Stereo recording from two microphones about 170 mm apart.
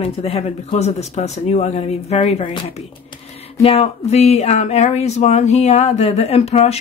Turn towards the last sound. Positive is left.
turn(degrees=40)  # may be behind; listen again after turning